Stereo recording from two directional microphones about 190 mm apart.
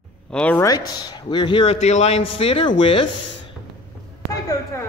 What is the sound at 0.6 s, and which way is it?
A man's voice, 20° left (ahead or behind).